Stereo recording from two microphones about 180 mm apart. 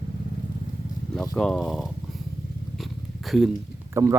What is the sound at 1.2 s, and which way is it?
Speech, 5° left (ahead or behind).